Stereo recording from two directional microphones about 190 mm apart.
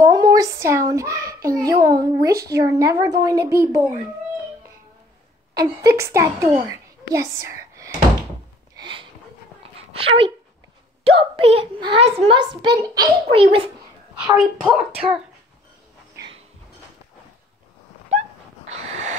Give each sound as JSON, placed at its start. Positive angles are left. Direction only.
{"t": 0.0, "sound": "a child's voice", "side_deg": -20}
{"t": 5.5, "sound": "a child's voice", "side_deg": -20}
{"t": 6.7, "sound": "whispering", "side_deg": -15}
{"t": 8.7, "sound": "a sound", "side_deg": -25}
{"t": 9.9, "sound": "a woman's voice", "side_deg": -30}
{"t": 14.2, "sound": "speech", "side_deg": 0}
{"t": 18.7, "sound": "a sound", "side_deg": -35}